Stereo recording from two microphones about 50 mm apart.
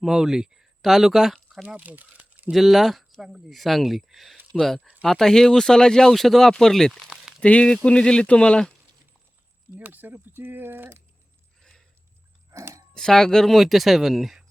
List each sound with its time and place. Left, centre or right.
0.0 s speech: centre
1.6 s speech: right
2.5 s speech: centre
7.4 s speech: left
9.7 s speech: right
12.5 s speech: right
12.9 s speech: centre